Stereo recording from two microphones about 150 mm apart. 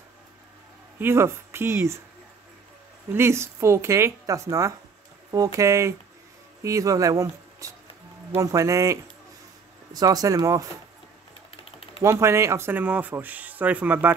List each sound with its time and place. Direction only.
0.9 s speech: 15° right (ahead or behind)
3.1 s speech: 15° right (ahead or behind)
12.0 s speech: 20° right (ahead or behind)